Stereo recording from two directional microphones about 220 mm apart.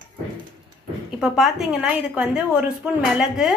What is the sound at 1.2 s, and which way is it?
Speech, centre (ahead or behind).